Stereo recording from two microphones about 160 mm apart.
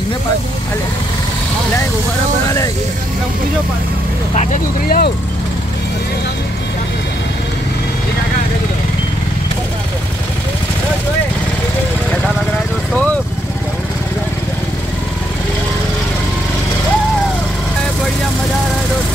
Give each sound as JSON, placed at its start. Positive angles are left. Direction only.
{"t": 4.8, "sound": "speech", "side_deg": 65}